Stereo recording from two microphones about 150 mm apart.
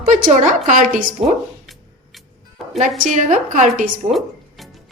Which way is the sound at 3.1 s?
55° right (ahead or behind).